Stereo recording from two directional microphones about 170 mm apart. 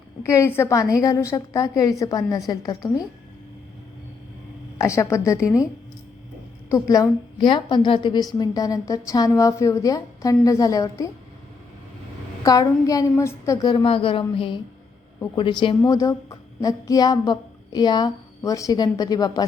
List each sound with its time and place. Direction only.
0.3 s a woman's voice: 15° left (ahead or behind)
4.8 s a woman's voice: 15° left (ahead or behind)
6.7 s a woman's voice: 20° left (ahead or behind)
12.4 s a woman's voice: 20° left (ahead or behind)